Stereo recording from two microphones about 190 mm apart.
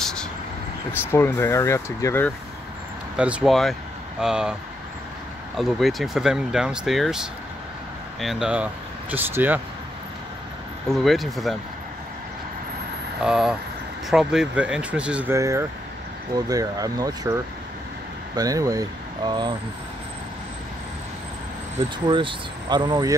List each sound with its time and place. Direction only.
0.0 s vehicle: 5° left (ahead or behind)
0.9 s speech: 10° left (ahead or behind)
3.2 s speech: 5° right (ahead or behind)
5.6 s speech: centre (ahead or behind)
10.9 s speech: centre (ahead or behind)
13.2 s speech: 5° right (ahead or behind); by 19.5 s 25° right (ahead or behind)
22.0 s speech: 25° right (ahead or behind)